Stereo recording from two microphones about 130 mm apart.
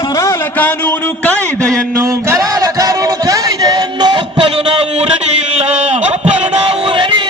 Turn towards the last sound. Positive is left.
turn(degrees=-40)  # may be behind; listen again after turning